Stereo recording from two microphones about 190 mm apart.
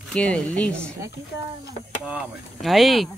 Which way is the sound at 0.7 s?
15° right (ahead or behind).